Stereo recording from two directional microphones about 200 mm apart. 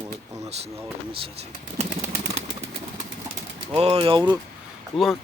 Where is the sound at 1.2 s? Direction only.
35° right (ahead or behind).